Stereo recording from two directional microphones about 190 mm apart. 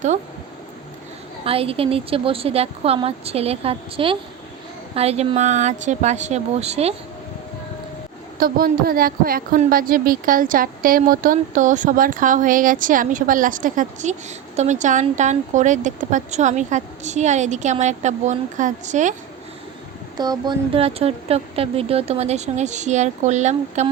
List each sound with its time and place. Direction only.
1.5 s a woman's voice: 30° right (ahead or behind)
8.4 s a woman's voice: 50° right (ahead or behind)
20.1 s speech: 20° right (ahead or behind); by 23.9 s 35° right (ahead or behind)